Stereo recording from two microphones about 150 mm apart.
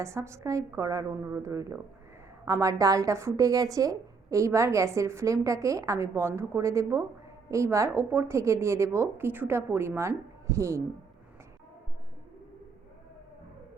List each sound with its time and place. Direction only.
0.0 s a woman's voice: 20° right (ahead or behind)